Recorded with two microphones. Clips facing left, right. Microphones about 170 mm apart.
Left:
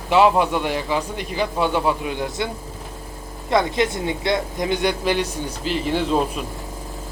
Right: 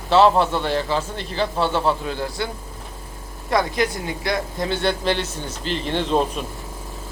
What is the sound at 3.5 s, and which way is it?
Speech, 20° left (ahead or behind).